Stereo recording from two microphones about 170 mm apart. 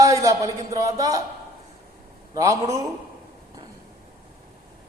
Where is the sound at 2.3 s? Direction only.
20° right (ahead or behind).